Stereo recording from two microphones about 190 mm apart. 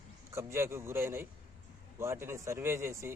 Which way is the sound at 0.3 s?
15° right (ahead or behind).